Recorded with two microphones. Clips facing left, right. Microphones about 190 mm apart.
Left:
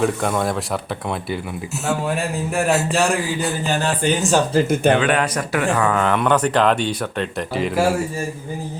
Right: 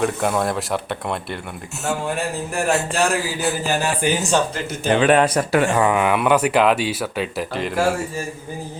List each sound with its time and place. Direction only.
0.0 s a man's voice: centre (ahead or behind)
2.6 s a man's voice: centre (ahead or behind)
4.7 s speech: 60° left (ahead or behind)
4.9 s speech: 30° right (ahead or behind); by 7.9 s centre (ahead or behind)